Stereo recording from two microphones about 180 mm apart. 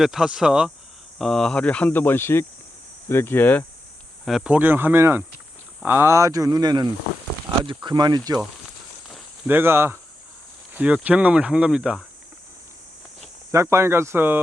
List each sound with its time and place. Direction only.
0.0 s speech: 5° right (ahead or behind)
4.3 s speech: 5° right (ahead or behind); by 8.4 s 20° right (ahead or behind)
9.5 s speech: 10° right (ahead or behind)
13.5 s speech: 15° right (ahead or behind)